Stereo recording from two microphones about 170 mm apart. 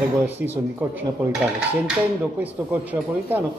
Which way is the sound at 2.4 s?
10° right (ahead or behind).